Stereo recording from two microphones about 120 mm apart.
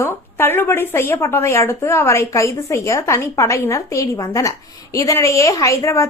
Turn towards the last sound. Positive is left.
turn(degrees=25)  # may be behind; listen again after turning